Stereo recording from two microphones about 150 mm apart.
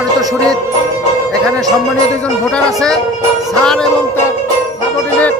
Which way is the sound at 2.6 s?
5° left (ahead or behind).